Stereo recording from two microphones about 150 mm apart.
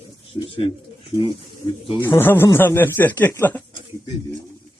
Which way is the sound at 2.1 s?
15° left (ahead or behind).